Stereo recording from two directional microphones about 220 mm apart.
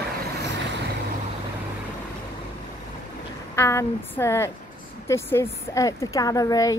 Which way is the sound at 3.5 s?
10° left (ahead or behind).